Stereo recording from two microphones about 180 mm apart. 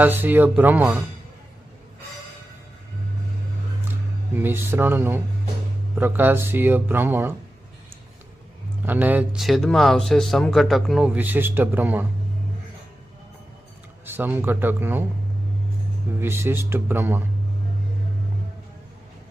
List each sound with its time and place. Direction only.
0.0 s speech: 10° right (ahead or behind)
4.4 s speech: 10° right (ahead or behind)
8.8 s speech: 10° right (ahead or behind)
14.0 s speech: 10° right (ahead or behind)
16.2 s speech: 10° right (ahead or behind)